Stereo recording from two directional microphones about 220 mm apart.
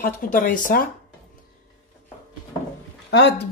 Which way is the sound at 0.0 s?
40° left (ahead or behind).